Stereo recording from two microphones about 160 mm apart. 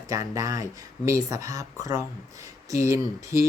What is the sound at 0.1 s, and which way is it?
Speech, 20° right (ahead or behind).